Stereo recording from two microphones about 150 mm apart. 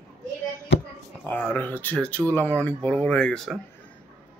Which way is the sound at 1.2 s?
10° left (ahead or behind).